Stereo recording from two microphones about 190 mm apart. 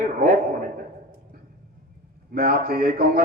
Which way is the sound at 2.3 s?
50° right (ahead or behind).